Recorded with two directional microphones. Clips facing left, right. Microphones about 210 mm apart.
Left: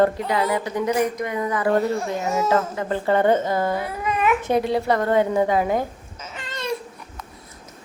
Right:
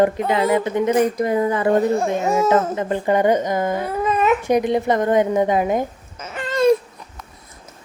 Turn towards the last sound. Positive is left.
turn(degrees=-50)  # may be behind; listen again after turning